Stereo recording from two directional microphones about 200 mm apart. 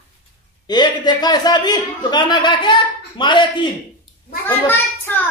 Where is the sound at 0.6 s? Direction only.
20° left (ahead or behind).